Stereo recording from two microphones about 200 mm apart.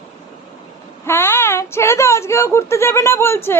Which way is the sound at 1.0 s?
10° left (ahead or behind).